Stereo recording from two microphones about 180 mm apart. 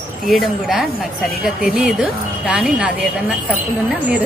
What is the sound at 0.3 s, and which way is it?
A woman's voice, centre (ahead or behind).